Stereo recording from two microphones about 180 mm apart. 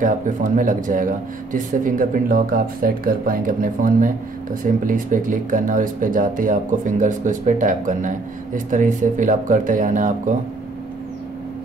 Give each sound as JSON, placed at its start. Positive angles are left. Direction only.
{"t": 0.0, "sound": "speech", "side_deg": -45}